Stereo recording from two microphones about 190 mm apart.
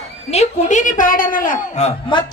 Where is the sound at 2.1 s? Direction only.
25° left (ahead or behind).